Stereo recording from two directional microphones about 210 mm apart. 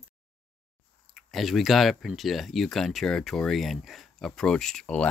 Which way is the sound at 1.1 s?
Centre (ahead or behind).